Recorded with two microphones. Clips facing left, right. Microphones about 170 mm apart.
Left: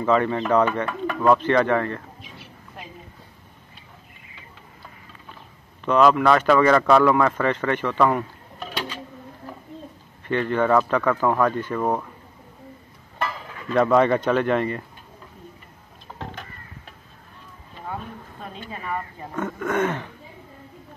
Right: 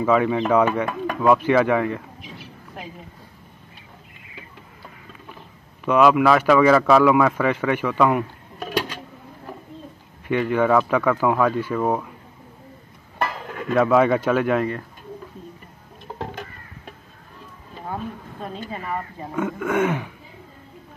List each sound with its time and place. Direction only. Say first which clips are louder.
0.0 s speech: right 2 dB; 10° right (ahead or behind)
5.9 s speech: right 1 dB; 10° right (ahead or behind)
10.2 s speech: right 2 dB; 10° right (ahead or behind)
13.2 s cutlery: right 3 dB; 55° right (ahead or behind)
13.7 s a man's voice: right 1 dB; 5° right (ahead or behind)
19.3 s speech: right 2 dB; 10° right (ahead or behind)